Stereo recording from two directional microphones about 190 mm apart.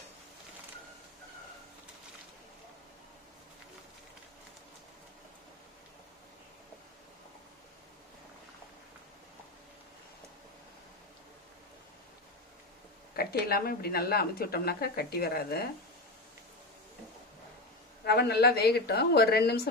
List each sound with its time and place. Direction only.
13.1 s a woman's voice: 55° left (ahead or behind)
18.0 s a woman's voice: 60° left (ahead or behind)